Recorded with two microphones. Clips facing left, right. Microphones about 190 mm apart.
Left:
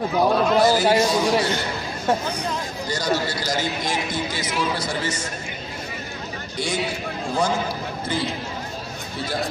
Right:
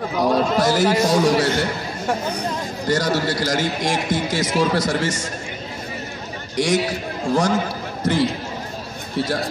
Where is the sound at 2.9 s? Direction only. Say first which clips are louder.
Right 4 dB; 90° right.